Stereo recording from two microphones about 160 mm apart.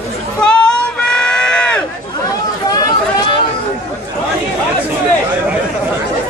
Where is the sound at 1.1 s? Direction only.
5° left (ahead or behind).